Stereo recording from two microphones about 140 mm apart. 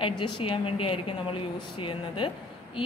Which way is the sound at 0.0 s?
40° left (ahead or behind).